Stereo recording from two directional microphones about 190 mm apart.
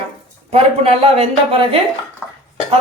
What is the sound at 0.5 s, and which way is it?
Speech, 35° right (ahead or behind).